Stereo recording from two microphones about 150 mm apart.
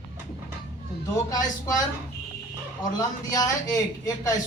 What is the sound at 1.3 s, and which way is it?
Speech, 25° left (ahead or behind).